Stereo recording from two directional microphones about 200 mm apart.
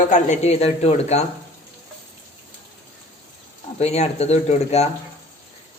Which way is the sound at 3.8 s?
30° left (ahead or behind).